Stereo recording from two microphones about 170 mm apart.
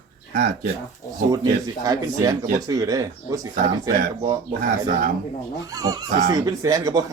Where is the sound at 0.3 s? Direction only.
60° right (ahead or behind).